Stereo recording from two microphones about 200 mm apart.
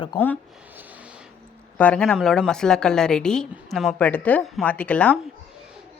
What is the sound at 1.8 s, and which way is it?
A woman's voice, 5° left (ahead or behind).